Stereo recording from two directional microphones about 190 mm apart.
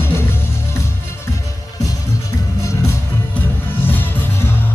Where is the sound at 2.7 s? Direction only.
10° left (ahead or behind).